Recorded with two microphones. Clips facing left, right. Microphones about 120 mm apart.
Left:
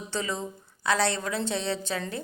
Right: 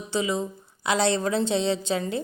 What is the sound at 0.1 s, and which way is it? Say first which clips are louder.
A woman's voice: right 6 dB; 15° right (ahead or behind).